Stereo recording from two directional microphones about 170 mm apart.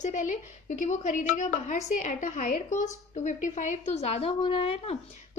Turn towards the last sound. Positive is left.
turn(degrees=35)  # may be behind; listen again after turning